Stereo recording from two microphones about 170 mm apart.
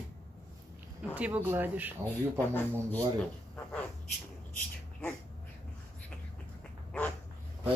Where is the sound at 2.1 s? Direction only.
10° left (ahead or behind).